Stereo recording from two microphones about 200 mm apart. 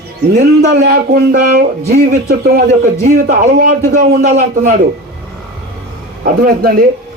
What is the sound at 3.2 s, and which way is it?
A man's voice, 45° right (ahead or behind).